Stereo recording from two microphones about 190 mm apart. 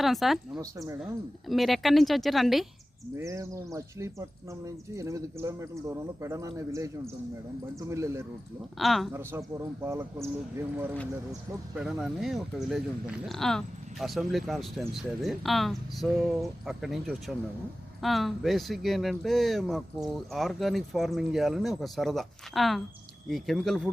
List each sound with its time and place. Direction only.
0.0 s speech: centre (ahead or behind)
0.6 s speech: 15° right (ahead or behind)
1.5 s speech: centre (ahead or behind)
3.2 s speech: 15° right (ahead or behind)
8.8 s speech: centre (ahead or behind)
9.1 s speech: 15° right (ahead or behind)
11.7 s speech: 5° right (ahead or behind)